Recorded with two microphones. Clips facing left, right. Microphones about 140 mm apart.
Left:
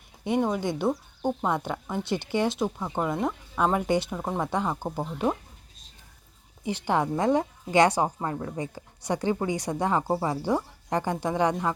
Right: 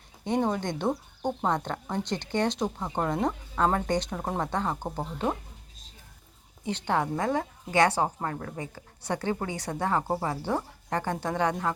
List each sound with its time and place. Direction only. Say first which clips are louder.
0.3 s speech: left 2 dB; 5° left (ahead or behind)
4.5 s speech: left 2 dB; 10° left (ahead or behind)
6.7 s speech: left 2 dB; 10° left (ahead or behind)